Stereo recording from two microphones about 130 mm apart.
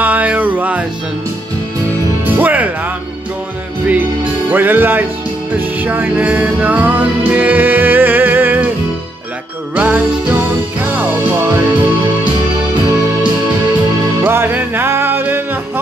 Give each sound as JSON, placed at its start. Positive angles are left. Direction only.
{"t": 0.0, "sound": "music", "side_deg": -10}
{"t": 2.3, "sound": "music", "side_deg": -15}
{"t": 4.5, "sound": "music", "side_deg": -15}
{"t": 9.8, "sound": "music", "side_deg": -10}
{"t": 14.2, "sound": "music", "side_deg": -15}